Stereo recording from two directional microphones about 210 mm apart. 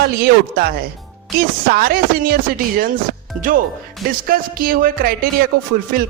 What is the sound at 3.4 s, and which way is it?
Speech, 40° right (ahead or behind).